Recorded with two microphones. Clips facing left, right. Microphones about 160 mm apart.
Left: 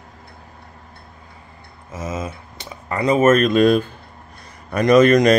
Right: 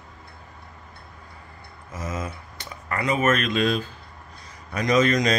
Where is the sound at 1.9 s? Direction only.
25° left (ahead or behind).